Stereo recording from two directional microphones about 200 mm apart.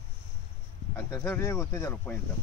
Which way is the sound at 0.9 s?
10° left (ahead or behind).